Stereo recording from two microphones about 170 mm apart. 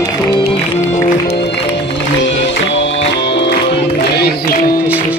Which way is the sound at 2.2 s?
90° left.